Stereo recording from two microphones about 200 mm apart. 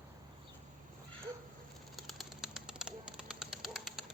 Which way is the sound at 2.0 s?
Centre (ahead or behind).